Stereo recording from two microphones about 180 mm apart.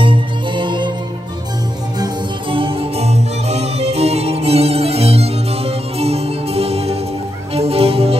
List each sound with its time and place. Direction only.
0.0 s music: 25° right (ahead or behind)
2.5 s music: 30° right (ahead or behind)